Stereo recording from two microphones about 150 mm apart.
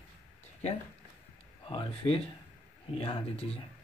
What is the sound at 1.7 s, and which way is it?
Speech, 40° left (ahead or behind).